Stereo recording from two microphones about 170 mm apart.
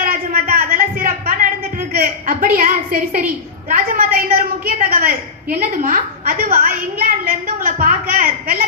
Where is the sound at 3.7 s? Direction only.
60° right (ahead or behind).